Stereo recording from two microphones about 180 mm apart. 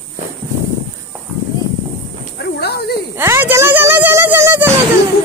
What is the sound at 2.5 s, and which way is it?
Speech, 60° left (ahead or behind).